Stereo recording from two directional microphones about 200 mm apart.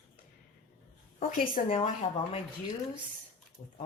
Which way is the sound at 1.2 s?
45° left (ahead or behind).